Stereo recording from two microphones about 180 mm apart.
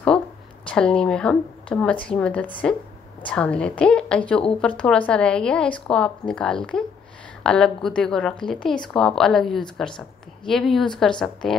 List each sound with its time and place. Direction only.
0.7 s a woman's voice: 5° left (ahead or behind)